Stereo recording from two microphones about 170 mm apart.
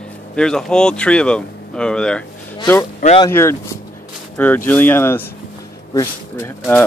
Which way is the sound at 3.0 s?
50° left (ahead or behind).